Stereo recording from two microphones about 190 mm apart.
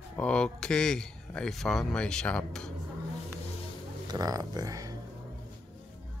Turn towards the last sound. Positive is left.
turn(degrees=-20)  # may be behind; listen again after turning